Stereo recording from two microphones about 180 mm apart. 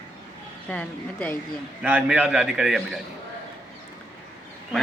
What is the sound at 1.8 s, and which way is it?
Speech, 10° right (ahead or behind).